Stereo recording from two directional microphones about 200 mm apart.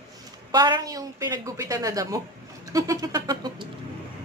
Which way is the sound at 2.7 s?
15° right (ahead or behind).